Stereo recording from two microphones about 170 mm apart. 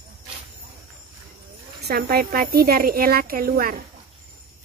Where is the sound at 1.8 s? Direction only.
70° right (ahead or behind).